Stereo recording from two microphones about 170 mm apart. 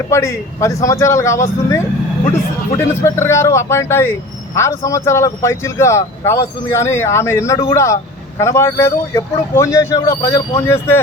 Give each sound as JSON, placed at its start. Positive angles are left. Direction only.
{"t": 0.1, "sound": "speech", "side_deg": 15}